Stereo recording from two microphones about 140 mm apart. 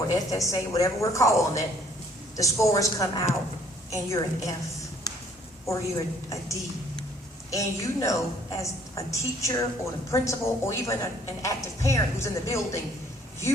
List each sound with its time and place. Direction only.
0.1 s a woman's voice: 20° left (ahead or behind)
5.1 s a sound: 30° left (ahead or behind)
5.6 s a woman's voice: 20° left (ahead or behind)